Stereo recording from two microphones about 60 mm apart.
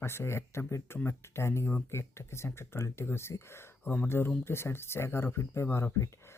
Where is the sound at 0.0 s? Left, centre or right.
Left.